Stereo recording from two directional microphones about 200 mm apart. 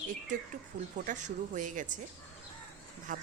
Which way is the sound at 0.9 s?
40° right (ahead or behind).